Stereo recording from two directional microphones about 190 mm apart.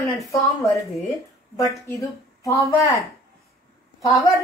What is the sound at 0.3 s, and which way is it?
A woman's voice, 15° left (ahead or behind).